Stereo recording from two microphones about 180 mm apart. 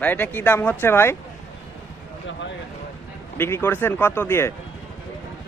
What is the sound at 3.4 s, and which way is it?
Speech, 15° left (ahead or behind).